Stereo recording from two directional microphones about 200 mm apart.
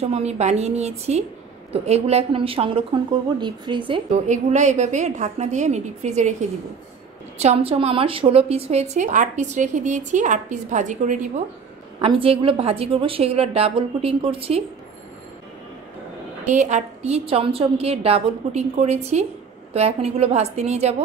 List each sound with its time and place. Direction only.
0.0 s a woman's voice: 30° right (ahead or behind)
4.1 s a woman's voice: 35° right (ahead or behind)
7.3 s a woman's voice: 30° right (ahead or behind)
16.4 s a woman's voice: 35° right (ahead or behind)